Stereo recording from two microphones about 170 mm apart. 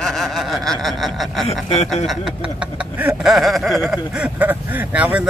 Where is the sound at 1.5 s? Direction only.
40° left (ahead or behind).